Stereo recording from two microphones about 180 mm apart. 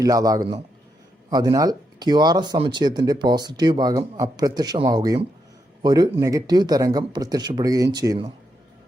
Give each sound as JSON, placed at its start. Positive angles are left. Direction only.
{"t": 0.0, "sound": "speech", "side_deg": -20}